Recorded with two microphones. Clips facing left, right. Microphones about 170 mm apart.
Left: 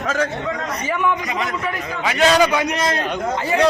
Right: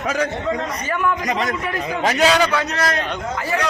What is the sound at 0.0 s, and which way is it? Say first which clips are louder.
Speech: even; 15° right (ahead or behind).